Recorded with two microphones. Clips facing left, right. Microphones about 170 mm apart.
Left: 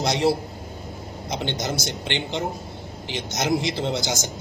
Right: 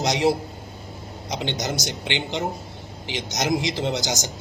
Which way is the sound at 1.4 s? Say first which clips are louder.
Even; 15° right (ahead or behind).